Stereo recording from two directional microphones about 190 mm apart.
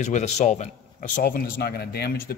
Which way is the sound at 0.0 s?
40° left (ahead or behind).